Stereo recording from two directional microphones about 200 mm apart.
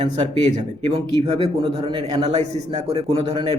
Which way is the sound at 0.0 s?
35° right (ahead or behind).